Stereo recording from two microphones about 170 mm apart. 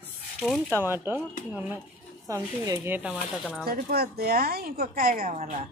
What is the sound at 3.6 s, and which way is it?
A woman's voice, 65° right (ahead or behind).